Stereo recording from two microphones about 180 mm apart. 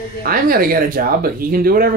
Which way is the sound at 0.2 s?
55° right (ahead or behind).